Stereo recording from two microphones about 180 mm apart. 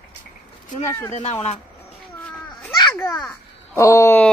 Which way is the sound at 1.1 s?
40° left (ahead or behind).